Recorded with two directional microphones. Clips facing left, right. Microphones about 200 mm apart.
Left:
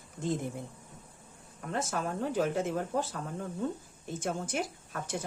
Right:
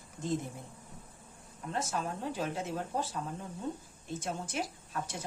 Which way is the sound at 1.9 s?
50° left (ahead or behind).